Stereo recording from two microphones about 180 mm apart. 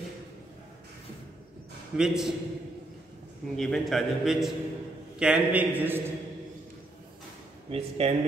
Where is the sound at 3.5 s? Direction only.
Centre (ahead or behind).